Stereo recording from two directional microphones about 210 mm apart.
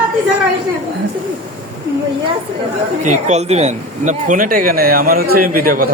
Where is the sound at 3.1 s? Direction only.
30° right (ahead or behind).